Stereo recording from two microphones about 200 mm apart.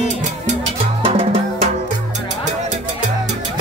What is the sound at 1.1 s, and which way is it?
Music, 30° right (ahead or behind).